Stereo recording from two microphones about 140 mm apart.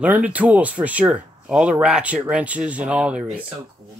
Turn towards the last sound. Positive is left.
turn(degrees=-5)  # may be behind; listen again after turning